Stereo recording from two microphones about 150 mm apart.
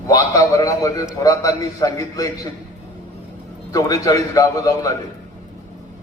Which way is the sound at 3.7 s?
25° left (ahead or behind).